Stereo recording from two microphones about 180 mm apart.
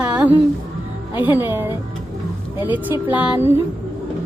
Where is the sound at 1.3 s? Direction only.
10° right (ahead or behind).